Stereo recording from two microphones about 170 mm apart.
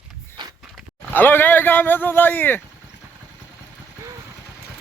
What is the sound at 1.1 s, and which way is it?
Speech, 10° left (ahead or behind).